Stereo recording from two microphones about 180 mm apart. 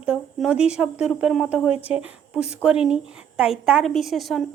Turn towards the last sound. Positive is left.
turn(degrees=0)  # may be behind; listen again after turning